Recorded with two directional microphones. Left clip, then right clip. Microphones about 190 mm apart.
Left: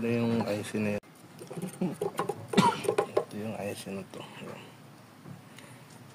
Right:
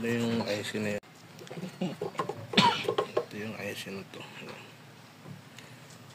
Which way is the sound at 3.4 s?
30° left (ahead or behind).